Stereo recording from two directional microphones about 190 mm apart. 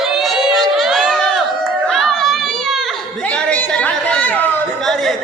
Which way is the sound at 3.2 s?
5° left (ahead or behind).